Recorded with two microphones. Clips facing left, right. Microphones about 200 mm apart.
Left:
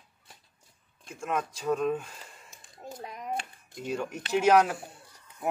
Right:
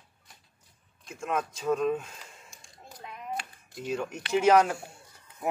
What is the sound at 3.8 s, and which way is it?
Speech, centre (ahead or behind).